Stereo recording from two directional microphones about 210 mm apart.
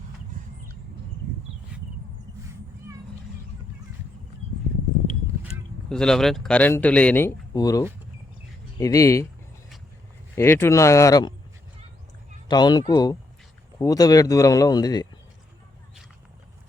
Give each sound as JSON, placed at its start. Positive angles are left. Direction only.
{"t": 2.5, "sound": "cat", "side_deg": -15}
{"t": 5.9, "sound": "speech", "side_deg": 5}
{"t": 10.3, "sound": "speech", "side_deg": 10}
{"t": 12.5, "sound": "speech", "side_deg": 20}